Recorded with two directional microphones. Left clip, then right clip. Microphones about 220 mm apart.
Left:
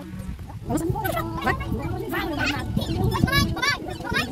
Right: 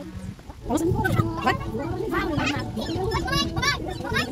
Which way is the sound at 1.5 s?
5° left (ahead or behind).